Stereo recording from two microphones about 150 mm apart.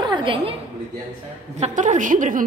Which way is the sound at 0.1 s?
35° right (ahead or behind).